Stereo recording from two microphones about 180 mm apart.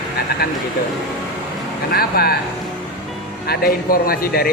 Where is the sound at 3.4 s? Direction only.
55° left (ahead or behind).